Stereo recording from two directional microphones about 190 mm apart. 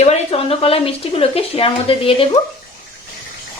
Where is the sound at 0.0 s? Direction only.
35° left (ahead or behind).